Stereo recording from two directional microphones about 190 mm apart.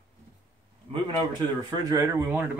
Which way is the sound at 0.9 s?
25° right (ahead or behind).